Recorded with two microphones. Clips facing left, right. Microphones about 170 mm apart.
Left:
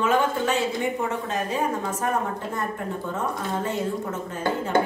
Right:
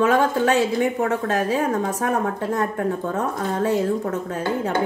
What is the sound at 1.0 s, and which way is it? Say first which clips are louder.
A woman's voice: right 6 dB; 80° right.